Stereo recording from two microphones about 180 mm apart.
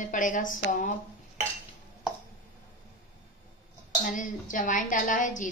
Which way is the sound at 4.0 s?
45° left (ahead or behind).